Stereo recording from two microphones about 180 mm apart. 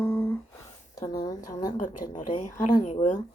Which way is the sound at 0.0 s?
10° left (ahead or behind).